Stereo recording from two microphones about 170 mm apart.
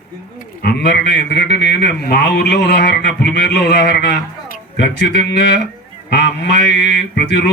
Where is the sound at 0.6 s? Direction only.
75° left (ahead or behind).